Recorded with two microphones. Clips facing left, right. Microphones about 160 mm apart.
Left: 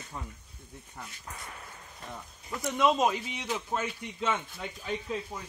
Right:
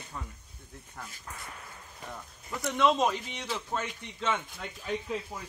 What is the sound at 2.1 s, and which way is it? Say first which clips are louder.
A man's voice: left 1 dB; centre (ahead or behind).